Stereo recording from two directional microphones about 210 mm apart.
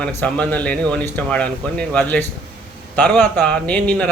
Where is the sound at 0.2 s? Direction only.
5° left (ahead or behind).